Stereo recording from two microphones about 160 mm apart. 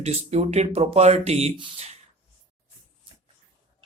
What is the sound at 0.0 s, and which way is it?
Speech, 40° right (ahead or behind).